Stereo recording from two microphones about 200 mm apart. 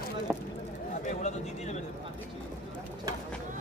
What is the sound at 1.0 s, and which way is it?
Speech, 35° left (ahead or behind).